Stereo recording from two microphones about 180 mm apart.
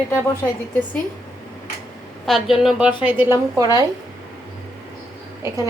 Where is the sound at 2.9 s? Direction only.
10° right (ahead or behind).